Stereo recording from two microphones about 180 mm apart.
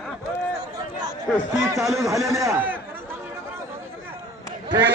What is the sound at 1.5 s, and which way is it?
Speech, 15° right (ahead or behind).